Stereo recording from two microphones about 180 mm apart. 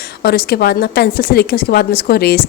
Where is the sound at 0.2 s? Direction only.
60° left (ahead or behind).